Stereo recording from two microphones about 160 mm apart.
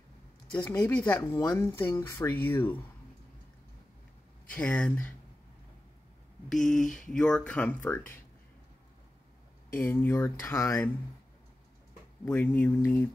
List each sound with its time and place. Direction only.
0.7 s speech: 10° left (ahead or behind)
4.5 s speech: 10° left (ahead or behind)
6.5 s a sound: 5° left (ahead or behind)
7.1 s speech: 5° left (ahead or behind)
9.8 s speech: 15° left (ahead or behind)
12.3 s speech: 10° left (ahead or behind)